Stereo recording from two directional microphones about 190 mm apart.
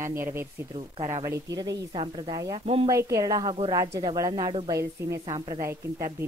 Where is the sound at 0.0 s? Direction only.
15° right (ahead or behind); by 2.9 s 30° right (ahead or behind).